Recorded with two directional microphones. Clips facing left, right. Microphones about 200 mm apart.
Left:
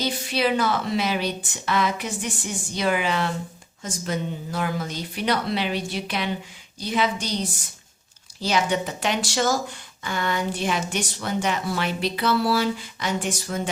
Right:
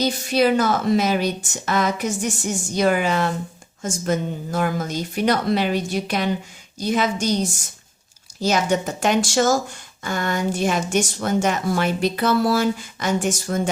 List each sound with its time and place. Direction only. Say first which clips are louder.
0.0 s speech: right 5 dB; 45° right (ahead or behind)